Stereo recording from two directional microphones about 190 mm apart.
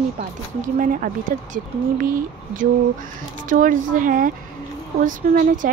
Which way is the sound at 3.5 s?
45° right (ahead or behind).